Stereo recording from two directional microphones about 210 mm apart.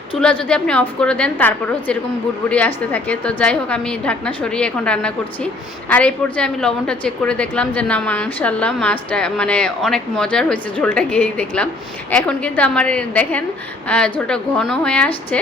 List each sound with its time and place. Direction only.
0.4 s a woman's voice: 5° left (ahead or behind)